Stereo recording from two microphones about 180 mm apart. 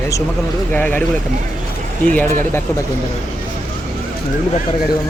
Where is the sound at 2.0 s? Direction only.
10° left (ahead or behind).